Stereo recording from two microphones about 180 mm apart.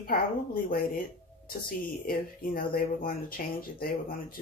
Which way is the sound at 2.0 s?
55° left (ahead or behind).